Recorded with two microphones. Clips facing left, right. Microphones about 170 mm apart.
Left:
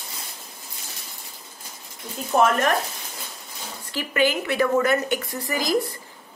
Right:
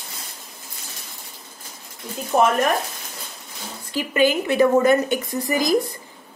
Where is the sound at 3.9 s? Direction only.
15° right (ahead or behind).